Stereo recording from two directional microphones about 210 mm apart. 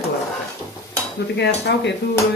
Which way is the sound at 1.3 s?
55° left (ahead or behind).